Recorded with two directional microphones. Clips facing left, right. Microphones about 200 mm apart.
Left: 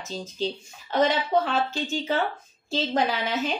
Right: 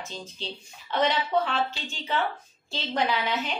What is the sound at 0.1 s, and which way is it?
A woman's voice, 45° left (ahead or behind).